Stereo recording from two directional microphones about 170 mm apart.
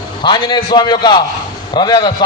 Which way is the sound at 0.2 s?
25° left (ahead or behind).